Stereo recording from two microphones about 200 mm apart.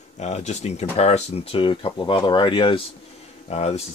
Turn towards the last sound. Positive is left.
turn(degrees=30)  # may be behind; listen again after turning